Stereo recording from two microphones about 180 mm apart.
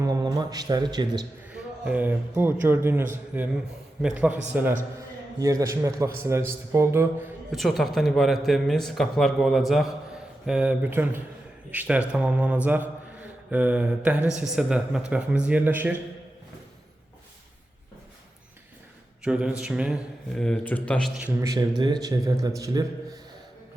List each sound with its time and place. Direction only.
0.0 s a man's voice: 20° right (ahead or behind)
1.5 s speech: 5° right (ahead or behind)
3.3 s mantra: 10° right (ahead or behind)
5.4 s mantra: 20° right (ahead or behind)
7.5 s speech: centre (ahead or behind)
10.4 s mantra: 5° right (ahead or behind)
12.6 s speech: 10° right (ahead or behind)
15.1 s mantra: 5° right (ahead or behind)
19.2 s speech: 5° right (ahead or behind)
21.4 s speech: 20° right (ahead or behind)